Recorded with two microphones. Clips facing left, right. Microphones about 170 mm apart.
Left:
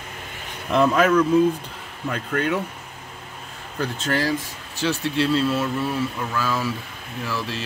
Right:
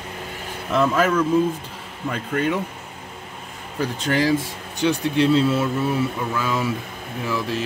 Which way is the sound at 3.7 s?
15° right (ahead or behind).